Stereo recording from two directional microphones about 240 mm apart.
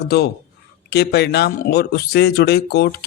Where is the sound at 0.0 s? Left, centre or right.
Left.